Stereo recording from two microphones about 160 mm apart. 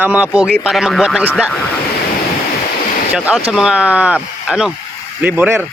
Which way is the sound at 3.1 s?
5° right (ahead or behind).